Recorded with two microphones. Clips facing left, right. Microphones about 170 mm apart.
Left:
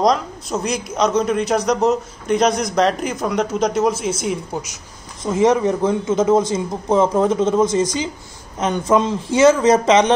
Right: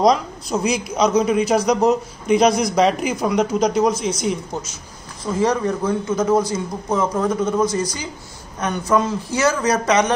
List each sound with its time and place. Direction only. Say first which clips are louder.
0.0 s a man's voice: right 1 dB; centre (ahead or behind)
5.2 s a man's voice: left 4 dB; 25° left (ahead or behind)